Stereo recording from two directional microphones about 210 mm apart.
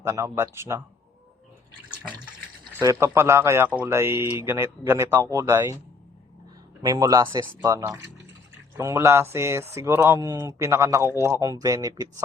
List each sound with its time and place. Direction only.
0.0 s speech: 10° right (ahead or behind)
2.7 s speech: 15° right (ahead or behind)
6.8 s speech: 15° right (ahead or behind)